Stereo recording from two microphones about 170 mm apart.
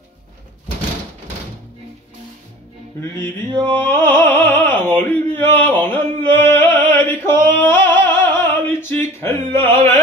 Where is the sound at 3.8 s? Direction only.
15° left (ahead or behind).